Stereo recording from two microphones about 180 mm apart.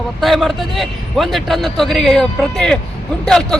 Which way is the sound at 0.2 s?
Centre (ahead or behind).